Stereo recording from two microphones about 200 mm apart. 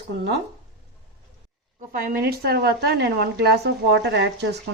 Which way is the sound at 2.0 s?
50° right (ahead or behind).